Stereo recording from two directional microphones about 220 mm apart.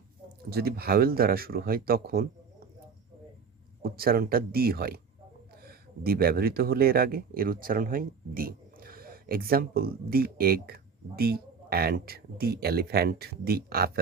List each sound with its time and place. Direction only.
0.5 s speech: 45° right (ahead or behind)
3.8 s speech: 45° right (ahead or behind)